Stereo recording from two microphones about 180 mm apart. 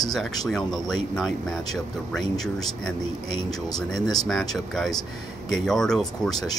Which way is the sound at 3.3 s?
25° left (ahead or behind).